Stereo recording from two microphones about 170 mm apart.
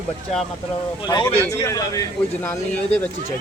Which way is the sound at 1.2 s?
15° left (ahead or behind).